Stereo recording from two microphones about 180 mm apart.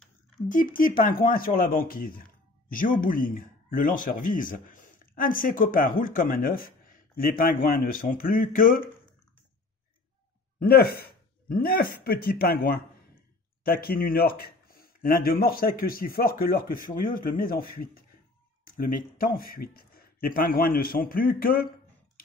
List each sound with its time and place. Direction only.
0.5 s speech: 50° left (ahead or behind)
10.6 s speech: 55° left (ahead or behind)